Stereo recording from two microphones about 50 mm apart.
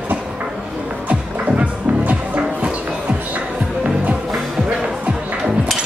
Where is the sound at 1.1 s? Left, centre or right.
Right.